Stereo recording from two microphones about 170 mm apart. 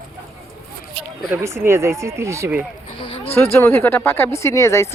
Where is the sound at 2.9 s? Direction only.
30° left (ahead or behind).